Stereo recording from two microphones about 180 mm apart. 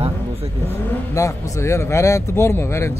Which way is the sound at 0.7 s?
15° left (ahead or behind).